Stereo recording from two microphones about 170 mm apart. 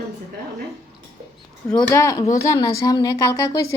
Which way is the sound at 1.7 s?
15° left (ahead or behind).